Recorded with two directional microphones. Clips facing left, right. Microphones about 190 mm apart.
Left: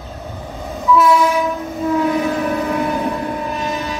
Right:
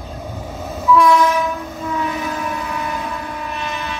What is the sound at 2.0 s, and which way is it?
Train, 45° left (ahead or behind).